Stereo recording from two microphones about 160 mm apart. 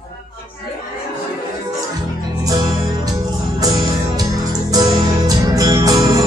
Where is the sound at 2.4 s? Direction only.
25° right (ahead or behind).